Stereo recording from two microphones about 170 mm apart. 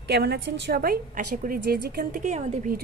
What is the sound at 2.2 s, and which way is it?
Speech, 45° right (ahead or behind).